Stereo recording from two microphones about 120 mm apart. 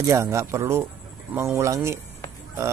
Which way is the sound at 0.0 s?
25° right (ahead or behind).